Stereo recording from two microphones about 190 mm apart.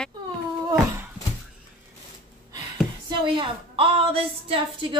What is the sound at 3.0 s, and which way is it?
A woman's voice, 25° right (ahead or behind).